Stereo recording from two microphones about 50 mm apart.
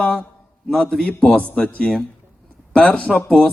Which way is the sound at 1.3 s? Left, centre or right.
Left.